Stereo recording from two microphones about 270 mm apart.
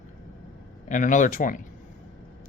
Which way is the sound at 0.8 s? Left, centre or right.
Left.